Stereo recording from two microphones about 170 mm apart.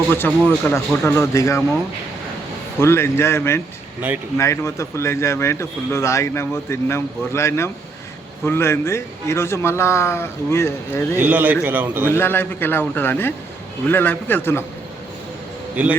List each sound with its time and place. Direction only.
0.6 s speech: 15° left (ahead or behind)
2.8 s speech: 15° left (ahead or behind)
11.2 s a man's voice: 10° right (ahead or behind)
12.1 s speech: 15° left (ahead or behind)
15.7 s a man's voice: 10° right (ahead or behind)